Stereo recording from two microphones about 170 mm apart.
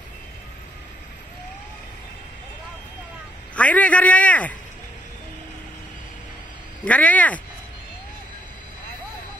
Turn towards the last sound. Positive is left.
turn(degrees=10)  # may be behind; listen again after turning